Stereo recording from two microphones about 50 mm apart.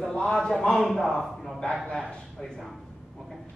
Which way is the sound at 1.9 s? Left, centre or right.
Centre.